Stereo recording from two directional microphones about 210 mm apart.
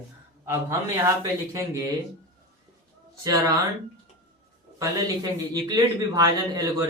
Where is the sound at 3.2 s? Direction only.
15° right (ahead or behind).